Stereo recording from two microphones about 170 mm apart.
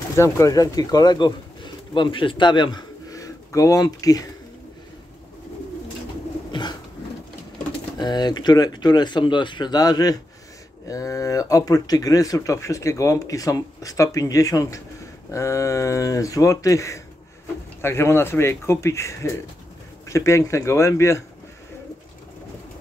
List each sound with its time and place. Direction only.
0.1 s speech: 15° left (ahead or behind)
6.5 s bird: 25° left (ahead or behind)
8.0 s speech: 25° left (ahead or behind)